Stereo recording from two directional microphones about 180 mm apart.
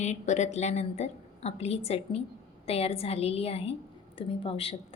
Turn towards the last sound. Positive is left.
turn(degrees=30)  # may be behind; listen again after turning